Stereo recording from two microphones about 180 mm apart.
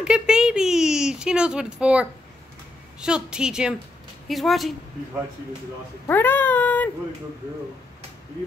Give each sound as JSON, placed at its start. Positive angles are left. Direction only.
{"t": 0.0, "sound": "speech", "side_deg": -5}
{"t": 6.0, "sound": "speech", "side_deg": 10}